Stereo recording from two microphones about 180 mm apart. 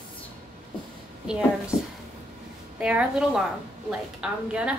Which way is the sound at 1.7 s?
15° left (ahead or behind).